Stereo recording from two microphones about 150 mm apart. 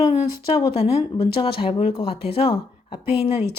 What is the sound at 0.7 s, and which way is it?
Speech, 40° left (ahead or behind).